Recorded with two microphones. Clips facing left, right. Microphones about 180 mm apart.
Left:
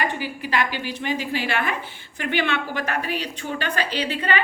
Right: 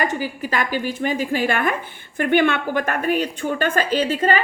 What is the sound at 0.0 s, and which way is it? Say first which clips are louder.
A woman's voice: right 3 dB; 45° right (ahead or behind).